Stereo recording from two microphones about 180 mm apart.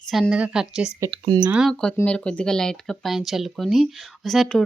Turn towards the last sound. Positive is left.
turn(degrees=0)  # may be behind; listen again after turning